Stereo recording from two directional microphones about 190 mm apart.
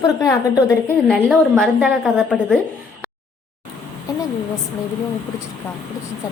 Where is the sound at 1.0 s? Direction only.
Centre (ahead or behind).